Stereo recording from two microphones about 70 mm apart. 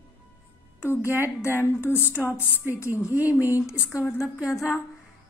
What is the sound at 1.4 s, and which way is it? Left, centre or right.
Speech, left.